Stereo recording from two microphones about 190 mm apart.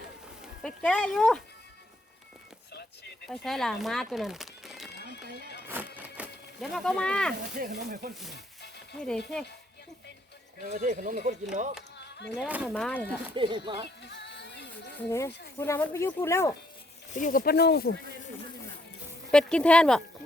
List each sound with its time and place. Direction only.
0.6 s speech: 5° left (ahead or behind)
3.2 s speech: centre (ahead or behind)
6.0 s a sound: 5° right (ahead or behind)
7.5 s speech: 50° right (ahead or behind)
9.0 s speech: 5° left (ahead or behind)
10.6 s speech: 40° right (ahead or behind)
12.3 s speech: 5° right (ahead or behind)
12.7 s speech: 5° left (ahead or behind)
13.3 s speech: 25° right (ahead or behind)
14.0 s music: 65° left (ahead or behind)
15.1 s speech: 15° left (ahead or behind)
17.1 s speech: 40° left (ahead or behind); by 17.8 s 60° left (ahead or behind)
19.3 s speech: 5° left (ahead or behind)